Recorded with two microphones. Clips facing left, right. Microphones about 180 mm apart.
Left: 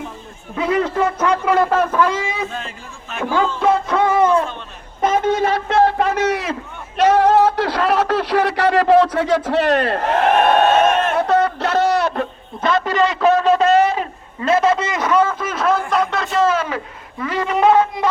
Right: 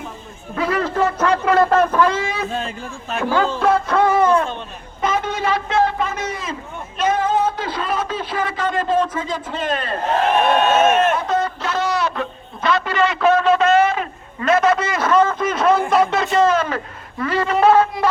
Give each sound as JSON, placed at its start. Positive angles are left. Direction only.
{"t": 0.5, "sound": "speech", "side_deg": 20}
{"t": 2.5, "sound": "a man's voice", "side_deg": -30}
{"t": 3.6, "sound": "music", "side_deg": 20}
{"t": 4.9, "sound": "a man's voice", "side_deg": 45}
{"t": 10.8, "sound": "speech", "side_deg": -5}
{"t": 11.2, "sound": "a sound", "side_deg": 65}
{"t": 15.9, "sound": "speech", "side_deg": -5}